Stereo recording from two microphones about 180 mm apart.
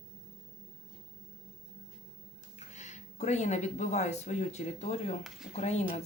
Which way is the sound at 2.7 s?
40° left (ahead or behind).